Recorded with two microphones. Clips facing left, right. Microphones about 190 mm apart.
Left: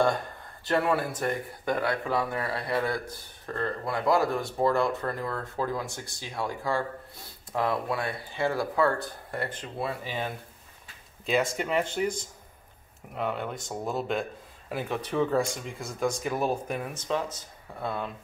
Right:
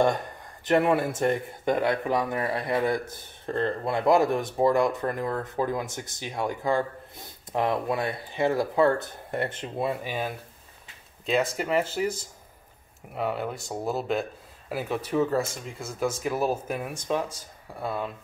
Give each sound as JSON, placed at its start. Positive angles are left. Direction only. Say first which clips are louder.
{"t": 0.7, "sound": "speech", "louder": "right 4 dB", "side_deg": -20}